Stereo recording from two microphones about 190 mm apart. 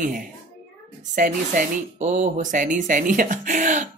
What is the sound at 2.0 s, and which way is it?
Speech, 40° right (ahead or behind).